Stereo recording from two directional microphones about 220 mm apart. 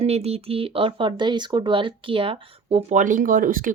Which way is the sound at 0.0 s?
30° right (ahead or behind).